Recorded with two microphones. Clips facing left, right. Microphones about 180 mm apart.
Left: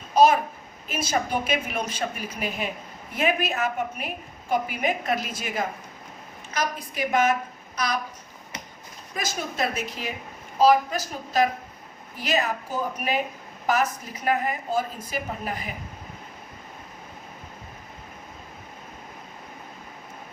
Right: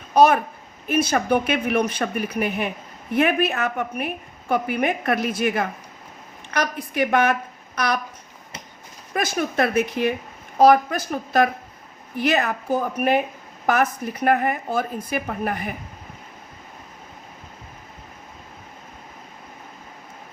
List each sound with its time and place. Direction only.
0.1 s a sound: 60° right (ahead or behind)
0.9 s a woman's voice: 60° right (ahead or behind)
9.1 s a woman's voice: 60° right (ahead or behind)